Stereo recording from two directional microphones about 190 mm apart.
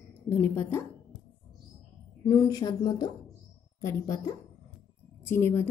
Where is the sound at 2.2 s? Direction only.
15° left (ahead or behind).